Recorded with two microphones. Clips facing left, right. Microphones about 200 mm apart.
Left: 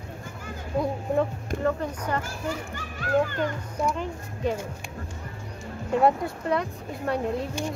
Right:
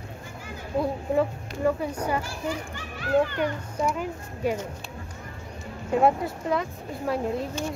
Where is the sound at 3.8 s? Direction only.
10° right (ahead or behind).